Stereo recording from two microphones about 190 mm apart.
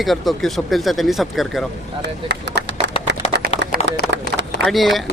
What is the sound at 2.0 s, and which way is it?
Speech, 60° right (ahead or behind).